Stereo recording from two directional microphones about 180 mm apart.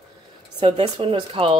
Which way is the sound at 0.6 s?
30° right (ahead or behind).